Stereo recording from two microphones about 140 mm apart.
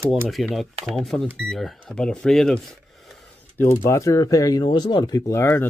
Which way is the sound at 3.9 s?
20° left (ahead or behind).